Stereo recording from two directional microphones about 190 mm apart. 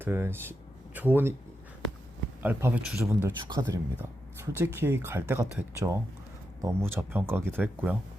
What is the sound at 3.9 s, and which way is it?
Speech, 10° right (ahead or behind).